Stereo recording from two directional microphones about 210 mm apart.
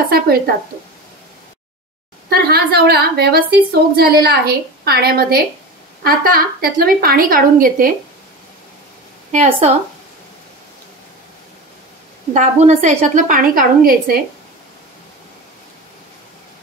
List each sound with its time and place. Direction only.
2.2 s a woman's voice: 45° right (ahead or behind)
9.3 s a woman's voice: 35° right (ahead or behind)
12.4 s a woman's voice: 35° right (ahead or behind)